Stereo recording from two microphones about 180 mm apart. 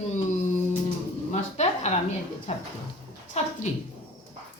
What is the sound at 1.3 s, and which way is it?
Speech, 40° left (ahead or behind).